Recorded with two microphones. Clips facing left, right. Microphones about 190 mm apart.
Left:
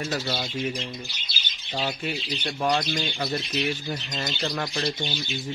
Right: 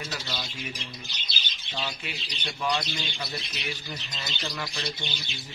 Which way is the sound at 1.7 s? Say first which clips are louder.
Left 7 dB; 45° left (ahead or behind).